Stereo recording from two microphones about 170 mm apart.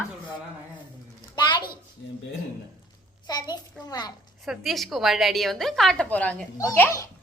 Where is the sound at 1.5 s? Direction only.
25° left (ahead or behind).